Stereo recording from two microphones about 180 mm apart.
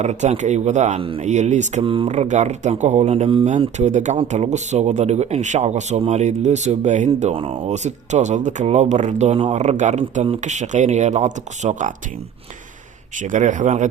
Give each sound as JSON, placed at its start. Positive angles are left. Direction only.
{"t": 0.0, "sound": "speech", "side_deg": -40}
{"t": 1.8, "sound": "speech", "side_deg": -30}
{"t": 13.1, "sound": "speech", "side_deg": -45}